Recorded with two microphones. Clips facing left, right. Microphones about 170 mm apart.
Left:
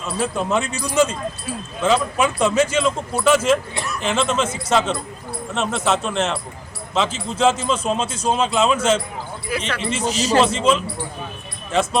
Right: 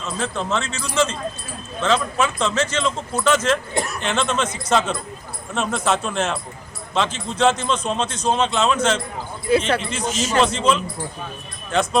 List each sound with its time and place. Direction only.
0.0 s a man's voice: 10° left (ahead or behind)
9.5 s speech: 30° right (ahead or behind)
10.1 s a man's voice: 35° left (ahead or behind)
10.4 s speech: 5° left (ahead or behind)